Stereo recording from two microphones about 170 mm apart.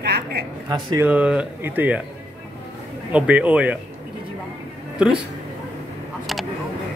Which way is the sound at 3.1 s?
10° right (ahead or behind).